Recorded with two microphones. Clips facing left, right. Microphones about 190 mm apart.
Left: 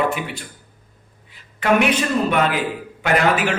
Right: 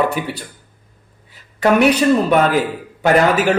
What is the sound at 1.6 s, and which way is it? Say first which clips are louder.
Speech: right 5 dB; 40° right (ahead or behind).